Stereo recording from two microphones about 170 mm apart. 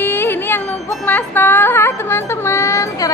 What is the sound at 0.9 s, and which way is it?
A woman's voice, 10° left (ahead or behind).